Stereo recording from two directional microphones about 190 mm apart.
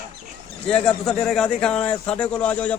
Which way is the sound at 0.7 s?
5° left (ahead or behind).